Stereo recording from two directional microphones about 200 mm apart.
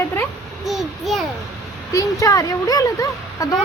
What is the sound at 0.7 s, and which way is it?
Speech, centre (ahead or behind).